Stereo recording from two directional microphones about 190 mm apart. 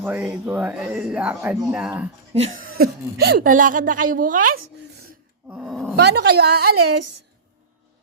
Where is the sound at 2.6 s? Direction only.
50° right (ahead or behind).